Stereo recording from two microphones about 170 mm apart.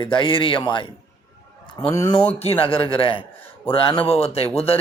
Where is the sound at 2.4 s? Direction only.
35° left (ahead or behind).